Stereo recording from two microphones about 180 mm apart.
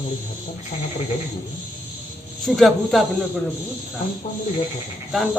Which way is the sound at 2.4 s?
Centre (ahead or behind).